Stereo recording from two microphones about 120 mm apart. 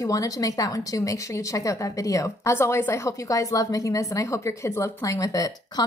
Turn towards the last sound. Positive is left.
turn(degrees=30)  # may be behind; listen again after turning